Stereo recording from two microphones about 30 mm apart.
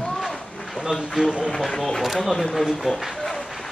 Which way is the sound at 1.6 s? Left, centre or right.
Centre.